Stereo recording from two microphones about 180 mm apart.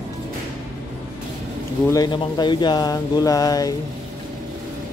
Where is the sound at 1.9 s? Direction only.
25° left (ahead or behind).